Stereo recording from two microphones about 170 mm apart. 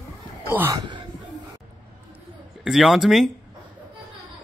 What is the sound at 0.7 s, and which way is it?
Speech, 25° right (ahead or behind).